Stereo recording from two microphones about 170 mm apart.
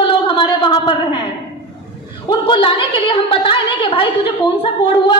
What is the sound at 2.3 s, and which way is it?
A woman's voice, 30° left (ahead or behind).